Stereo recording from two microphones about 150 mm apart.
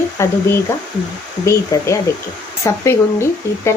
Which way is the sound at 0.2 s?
20° left (ahead or behind).